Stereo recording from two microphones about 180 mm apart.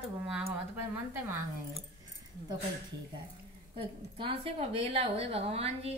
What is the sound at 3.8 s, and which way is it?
A woman's voice, 30° right (ahead or behind).